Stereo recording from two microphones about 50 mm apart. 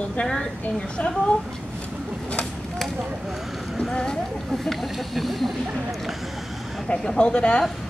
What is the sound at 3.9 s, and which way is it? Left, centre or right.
Speech, centre.